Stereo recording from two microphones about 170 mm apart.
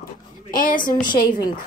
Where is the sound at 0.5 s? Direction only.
55° left (ahead or behind).